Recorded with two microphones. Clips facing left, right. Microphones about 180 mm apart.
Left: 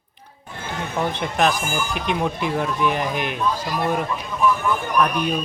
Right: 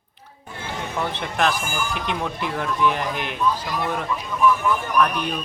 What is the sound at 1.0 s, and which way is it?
Speech, 15° left (ahead or behind).